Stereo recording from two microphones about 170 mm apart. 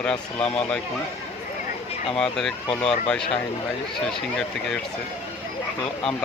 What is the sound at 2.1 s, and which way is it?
Speech, 5° left (ahead or behind).